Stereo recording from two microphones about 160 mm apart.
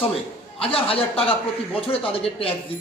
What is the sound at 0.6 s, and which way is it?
A man's voice, 35° left (ahead or behind).